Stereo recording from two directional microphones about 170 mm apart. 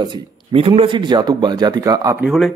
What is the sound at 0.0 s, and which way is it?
Speech, 30° right (ahead or behind).